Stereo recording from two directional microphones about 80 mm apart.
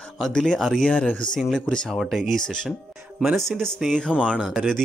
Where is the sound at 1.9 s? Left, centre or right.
Centre.